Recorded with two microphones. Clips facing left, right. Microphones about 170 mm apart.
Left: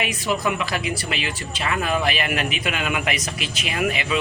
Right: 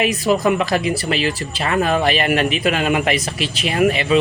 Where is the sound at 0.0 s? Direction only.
40° right (ahead or behind).